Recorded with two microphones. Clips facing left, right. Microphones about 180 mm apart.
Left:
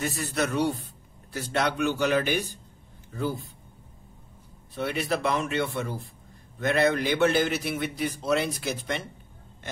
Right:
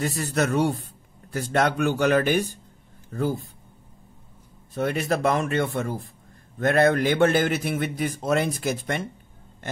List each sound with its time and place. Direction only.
0.0 s a man's voice: 40° right (ahead or behind)
4.7 s a man's voice: 45° right (ahead or behind)